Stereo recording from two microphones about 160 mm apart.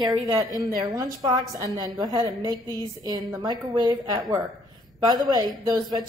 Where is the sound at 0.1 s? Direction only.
25° right (ahead or behind).